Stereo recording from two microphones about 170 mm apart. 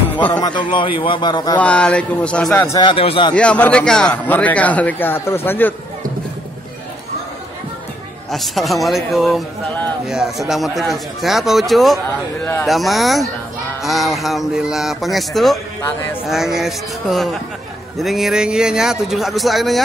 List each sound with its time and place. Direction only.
0.3 s a man's voice: 25° left (ahead or behind)
1.6 s a man's voice: 5° left (ahead or behind)
2.6 s a man's voice: 20° left (ahead or behind)
2.9 s a man's voice: 30° left (ahead or behind)
3.3 s a man's voice: 5° left (ahead or behind)
8.3 s speech: centre (ahead or behind)